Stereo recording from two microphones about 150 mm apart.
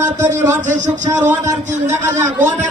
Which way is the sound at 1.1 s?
15° right (ahead or behind).